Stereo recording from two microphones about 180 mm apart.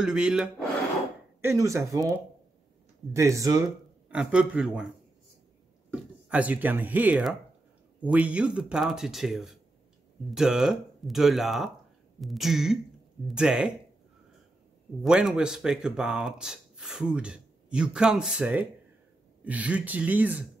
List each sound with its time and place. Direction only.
0.0 s speech: 5° right (ahead or behind)
1.4 s speech: 15° right (ahead or behind)
4.1 s speech: 5° right (ahead or behind)
6.2 s speech: 10° right (ahead or behind)
15.0 s speech: 5° right (ahead or behind)